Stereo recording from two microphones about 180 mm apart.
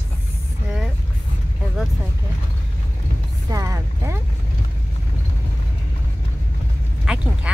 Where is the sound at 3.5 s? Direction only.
15° right (ahead or behind).